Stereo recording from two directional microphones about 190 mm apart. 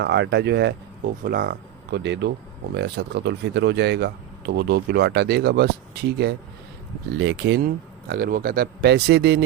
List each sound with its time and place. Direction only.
0.0 s speech: 65° right (ahead or behind)
1.2 s speech: 50° right (ahead or behind)
7.2 s speech: 75° right (ahead or behind)
8.0 s speech: 50° right (ahead or behind)